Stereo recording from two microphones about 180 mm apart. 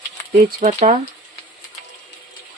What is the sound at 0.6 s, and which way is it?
Speech, 40° right (ahead or behind).